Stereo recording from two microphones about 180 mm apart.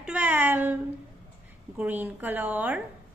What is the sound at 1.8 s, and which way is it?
A woman's voice, 10° right (ahead or behind).